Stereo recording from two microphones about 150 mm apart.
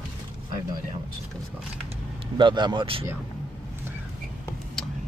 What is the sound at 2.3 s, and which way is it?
Speech, 30° right (ahead or behind).